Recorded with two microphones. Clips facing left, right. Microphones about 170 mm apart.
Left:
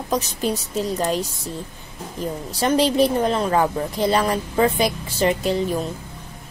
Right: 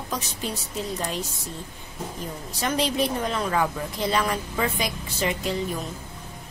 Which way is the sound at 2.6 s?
35° left (ahead or behind).